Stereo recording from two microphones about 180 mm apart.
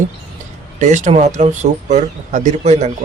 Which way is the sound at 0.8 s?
45° right (ahead or behind).